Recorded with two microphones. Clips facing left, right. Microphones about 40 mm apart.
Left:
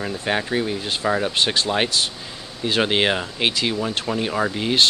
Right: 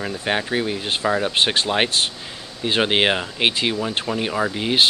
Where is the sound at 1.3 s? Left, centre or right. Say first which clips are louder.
Right 1 dB; right.